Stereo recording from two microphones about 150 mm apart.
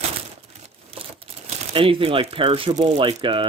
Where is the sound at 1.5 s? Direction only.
35° right (ahead or behind).